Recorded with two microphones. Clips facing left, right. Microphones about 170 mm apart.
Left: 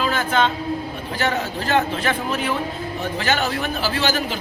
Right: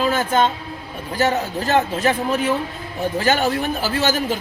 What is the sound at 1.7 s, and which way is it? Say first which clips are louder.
Speech: right 2 dB; 40° right (ahead or behind).